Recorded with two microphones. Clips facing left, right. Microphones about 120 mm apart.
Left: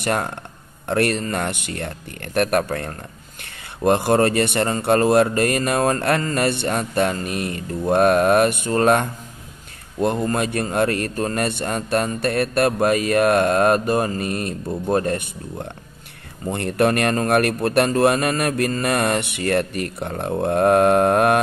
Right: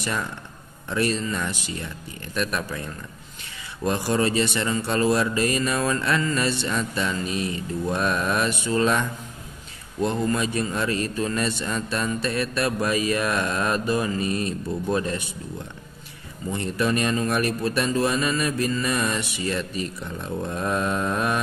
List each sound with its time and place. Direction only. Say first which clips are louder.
0.0 s a man's voice: left 6 dB; 60° left (ahead or behind)